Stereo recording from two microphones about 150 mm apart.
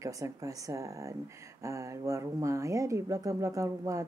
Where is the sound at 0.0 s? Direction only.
20° right (ahead or behind).